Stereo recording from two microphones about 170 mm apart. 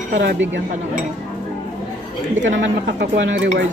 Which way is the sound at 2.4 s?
90° right.